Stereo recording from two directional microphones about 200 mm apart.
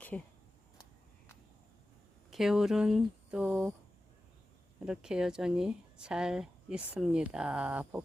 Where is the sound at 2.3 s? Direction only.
Centre (ahead or behind).